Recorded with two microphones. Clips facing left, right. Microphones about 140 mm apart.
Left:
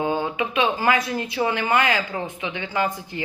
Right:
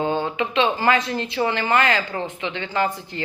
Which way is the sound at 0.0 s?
10° left (ahead or behind).